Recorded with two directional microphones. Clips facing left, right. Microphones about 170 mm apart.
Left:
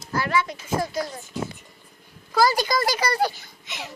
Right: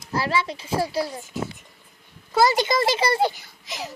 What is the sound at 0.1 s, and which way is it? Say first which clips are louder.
Child singing: even; 30° right (ahead or behind).